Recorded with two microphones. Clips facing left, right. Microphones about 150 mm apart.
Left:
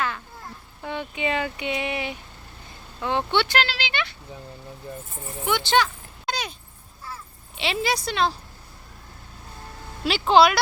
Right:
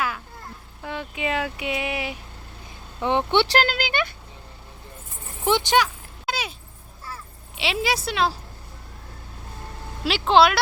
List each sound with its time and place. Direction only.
0.8 s speech: centre (ahead or behind)
3.0 s speech: 20° right (ahead or behind)
3.4 s speech: 40° right (ahead or behind)
5.6 s a sound: 10° right (ahead or behind)
7.5 s a woman's voice: centre (ahead or behind)
10.0 s a woman's voice: centre (ahead or behind)